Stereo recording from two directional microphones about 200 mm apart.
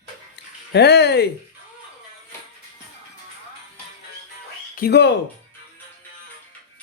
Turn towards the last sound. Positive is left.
turn(degrees=50)  # may be behind; listen again after turning